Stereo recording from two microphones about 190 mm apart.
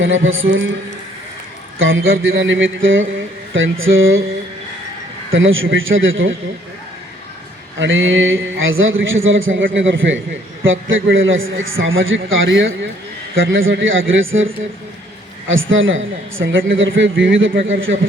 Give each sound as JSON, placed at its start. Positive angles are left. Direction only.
{"t": 0.0, "sound": "a man's voice", "side_deg": -90}
{"t": 1.8, "sound": "a man's voice", "side_deg": -90}
{"t": 5.3, "sound": "a man's voice", "side_deg": -90}
{"t": 7.8, "sound": "a man's voice", "side_deg": -90}